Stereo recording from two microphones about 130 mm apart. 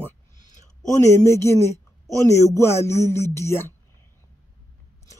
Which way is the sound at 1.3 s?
20° left (ahead or behind).